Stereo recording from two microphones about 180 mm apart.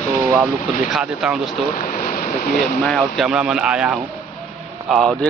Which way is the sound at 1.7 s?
50° left (ahead or behind).